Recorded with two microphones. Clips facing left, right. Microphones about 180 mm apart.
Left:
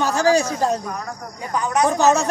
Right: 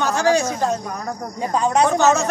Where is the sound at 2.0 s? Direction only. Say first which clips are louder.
Even; 35° left (ahead or behind).